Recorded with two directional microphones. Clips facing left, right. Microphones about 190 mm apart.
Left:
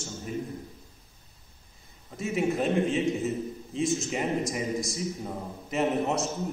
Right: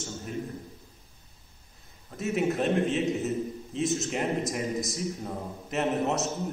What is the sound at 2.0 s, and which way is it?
A man's voice, centre (ahead or behind).